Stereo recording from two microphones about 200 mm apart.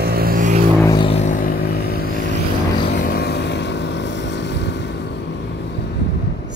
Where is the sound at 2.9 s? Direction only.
50° left (ahead or behind).